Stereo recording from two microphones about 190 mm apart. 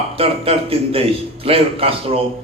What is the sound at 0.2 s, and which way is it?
A man's voice, 30° right (ahead or behind).